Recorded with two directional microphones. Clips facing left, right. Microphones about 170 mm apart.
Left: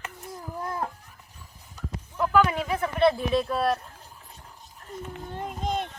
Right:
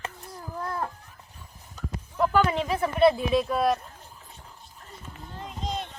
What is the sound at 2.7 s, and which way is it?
Speech, 5° right (ahead or behind).